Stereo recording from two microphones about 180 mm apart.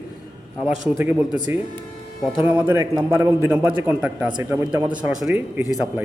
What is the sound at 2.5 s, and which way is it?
A man's voice, 10° right (ahead or behind).